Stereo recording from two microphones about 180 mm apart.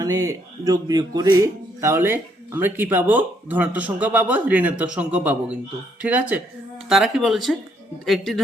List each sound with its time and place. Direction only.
0.0 s speech: 20° right (ahead or behind); by 8.4 s centre (ahead or behind)